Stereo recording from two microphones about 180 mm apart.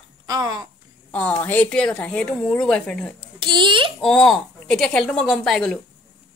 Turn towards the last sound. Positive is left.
turn(degrees=0)  # may be behind; listen again after turning